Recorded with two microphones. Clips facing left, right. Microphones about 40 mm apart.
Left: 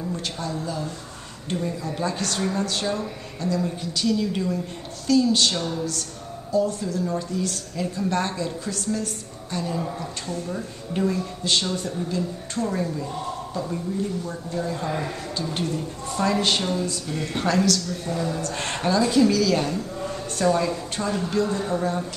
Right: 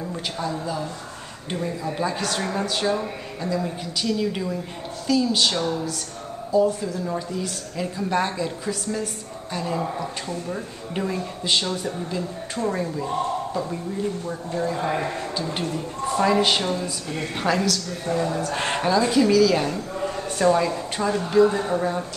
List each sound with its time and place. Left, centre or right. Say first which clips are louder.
0.1 s a woman's voice: right 1 dB; centre
14.2 s speech: right 2 dB; right
14.9 s speech: right 3 dB; right
15.4 s a woman's voice: even; centre
17.8 s a woman's voice: right 2 dB; right